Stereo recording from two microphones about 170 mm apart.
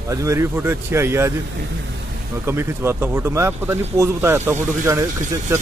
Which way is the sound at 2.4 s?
15° right (ahead or behind).